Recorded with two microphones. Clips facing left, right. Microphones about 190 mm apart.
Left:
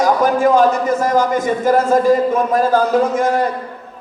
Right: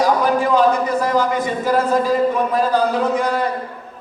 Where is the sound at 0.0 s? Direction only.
45° left (ahead or behind).